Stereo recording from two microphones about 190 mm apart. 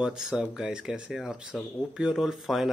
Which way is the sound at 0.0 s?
5° right (ahead or behind).